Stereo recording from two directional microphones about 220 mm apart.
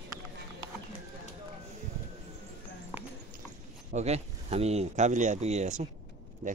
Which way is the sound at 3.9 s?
30° right (ahead or behind).